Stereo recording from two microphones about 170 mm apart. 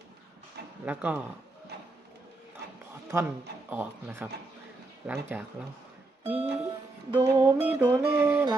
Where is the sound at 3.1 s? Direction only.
15° right (ahead or behind).